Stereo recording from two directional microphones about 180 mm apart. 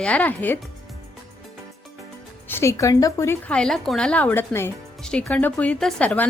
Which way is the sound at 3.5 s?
5° left (ahead or behind).